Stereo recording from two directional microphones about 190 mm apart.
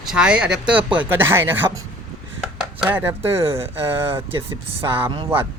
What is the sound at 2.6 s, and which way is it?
Chopping, 5° right (ahead or behind).